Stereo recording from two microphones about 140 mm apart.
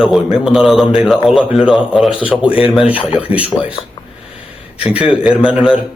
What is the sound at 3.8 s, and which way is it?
Speech, 40° left (ahead or behind).